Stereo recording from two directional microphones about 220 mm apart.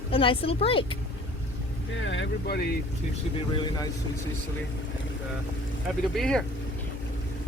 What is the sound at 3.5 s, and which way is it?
Speech, 20° left (ahead or behind).